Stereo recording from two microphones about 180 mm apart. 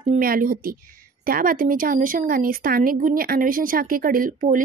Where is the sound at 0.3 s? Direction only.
50° right (ahead or behind).